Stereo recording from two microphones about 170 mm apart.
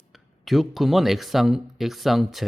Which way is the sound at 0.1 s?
Centre (ahead or behind).